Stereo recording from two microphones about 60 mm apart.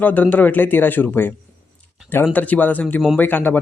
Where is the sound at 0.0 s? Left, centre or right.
Left.